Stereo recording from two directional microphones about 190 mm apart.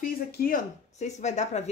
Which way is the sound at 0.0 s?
45° left (ahead or behind).